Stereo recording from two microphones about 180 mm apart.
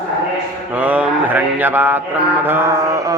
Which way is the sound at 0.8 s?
10° right (ahead or behind).